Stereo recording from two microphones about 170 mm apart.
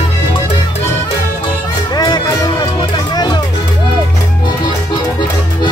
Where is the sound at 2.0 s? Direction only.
25° left (ahead or behind).